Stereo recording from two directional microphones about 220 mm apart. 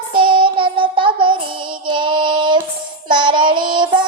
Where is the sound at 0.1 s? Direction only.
25° right (ahead or behind).